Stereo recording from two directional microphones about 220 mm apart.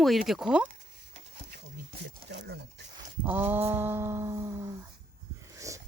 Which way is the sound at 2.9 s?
10° right (ahead or behind).